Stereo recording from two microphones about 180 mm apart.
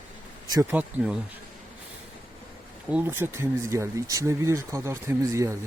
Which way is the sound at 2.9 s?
10° right (ahead or behind).